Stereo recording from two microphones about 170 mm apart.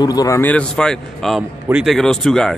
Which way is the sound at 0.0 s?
20° left (ahead or behind).